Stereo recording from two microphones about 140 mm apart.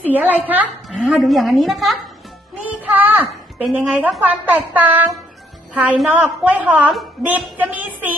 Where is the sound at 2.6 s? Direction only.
10° right (ahead or behind).